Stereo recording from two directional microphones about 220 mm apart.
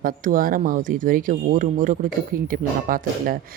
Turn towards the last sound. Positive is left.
turn(degrees=-40)  # may be behind; listen again after turning